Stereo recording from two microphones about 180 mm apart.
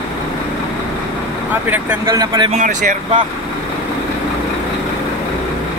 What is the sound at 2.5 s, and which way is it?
Speech, 45° right (ahead or behind).